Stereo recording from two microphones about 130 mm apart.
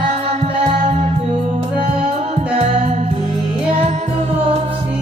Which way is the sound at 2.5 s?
50° right (ahead or behind).